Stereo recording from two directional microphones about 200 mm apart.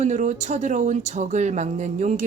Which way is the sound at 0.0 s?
35° right (ahead or behind).